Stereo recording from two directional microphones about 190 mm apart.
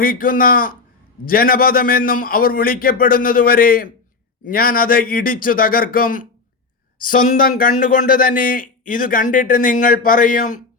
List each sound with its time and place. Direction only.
0.0 s speech: 50° left (ahead or behind)